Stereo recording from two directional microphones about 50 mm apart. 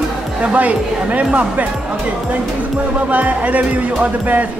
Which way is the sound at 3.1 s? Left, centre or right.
Right.